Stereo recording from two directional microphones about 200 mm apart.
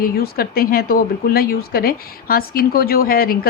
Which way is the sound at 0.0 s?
50° left (ahead or behind).